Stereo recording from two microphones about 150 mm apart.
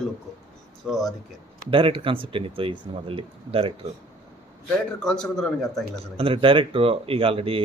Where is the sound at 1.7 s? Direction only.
35° right (ahead or behind).